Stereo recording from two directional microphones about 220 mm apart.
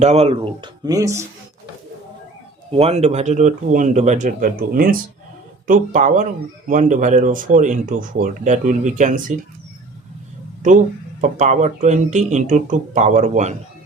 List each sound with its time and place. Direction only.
0.0 s speech: 30° right (ahead or behind)
2.7 s speech: 30° right (ahead or behind)
10.6 s speech: 35° right (ahead or behind)